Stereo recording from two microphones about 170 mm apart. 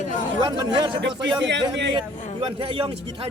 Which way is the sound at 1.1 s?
90° right.